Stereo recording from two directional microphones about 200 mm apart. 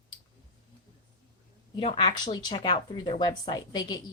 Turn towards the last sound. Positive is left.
turn(degrees=20)  # may be behind; listen again after turning